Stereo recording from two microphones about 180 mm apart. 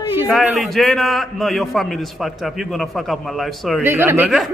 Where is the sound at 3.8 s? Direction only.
10° right (ahead or behind).